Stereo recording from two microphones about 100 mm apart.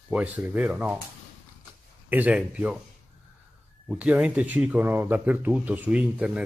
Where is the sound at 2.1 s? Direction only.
15° right (ahead or behind).